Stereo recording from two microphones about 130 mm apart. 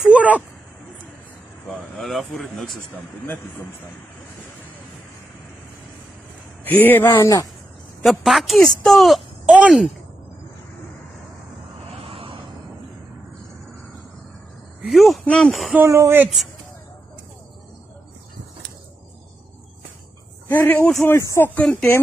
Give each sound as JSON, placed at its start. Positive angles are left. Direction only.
{"t": 0.1, "sound": "a sound", "side_deg": -10}
{"t": 1.7, "sound": "a woman's voice", "side_deg": 0}
{"t": 2.9, "sound": "speech", "side_deg": 15}
{"t": 6.8, "sound": "speech", "side_deg": 15}
{"t": 7.1, "sound": "speech", "side_deg": 30}
{"t": 8.0, "sound": "a woman's voice", "side_deg": 0}
{"t": 11.9, "sound": "vehicle", "side_deg": -45}
{"t": 14.8, "sound": "a woman's voice", "side_deg": 0}
{"t": 15.7, "sound": "speech", "side_deg": -20}
{"t": 20.4, "sound": "speech", "side_deg": 15}